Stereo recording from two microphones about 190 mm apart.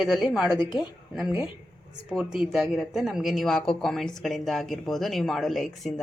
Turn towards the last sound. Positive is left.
turn(degrees=0)  # may be behind; listen again after turning